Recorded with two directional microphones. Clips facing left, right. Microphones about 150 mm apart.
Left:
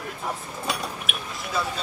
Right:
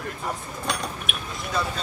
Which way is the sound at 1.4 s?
Centre (ahead or behind).